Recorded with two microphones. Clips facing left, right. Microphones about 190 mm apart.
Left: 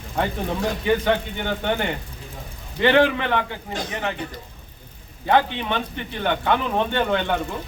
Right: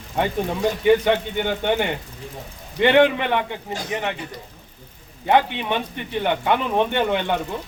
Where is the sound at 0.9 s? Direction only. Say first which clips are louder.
Right 4 dB; 10° right (ahead or behind).